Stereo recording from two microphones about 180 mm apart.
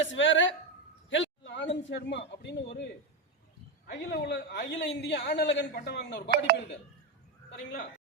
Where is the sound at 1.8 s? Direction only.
75° left (ahead or behind).